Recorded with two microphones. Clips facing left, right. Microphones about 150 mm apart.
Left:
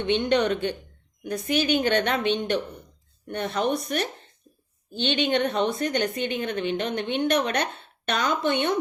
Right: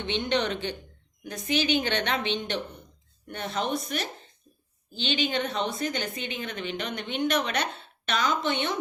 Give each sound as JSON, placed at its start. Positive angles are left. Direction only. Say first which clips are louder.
{"t": 0.1, "sound": "a woman's voice", "louder": "left 5 dB", "side_deg": 55}